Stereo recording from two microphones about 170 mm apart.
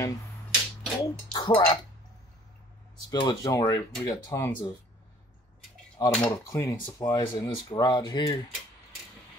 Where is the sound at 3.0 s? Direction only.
25° left (ahead or behind).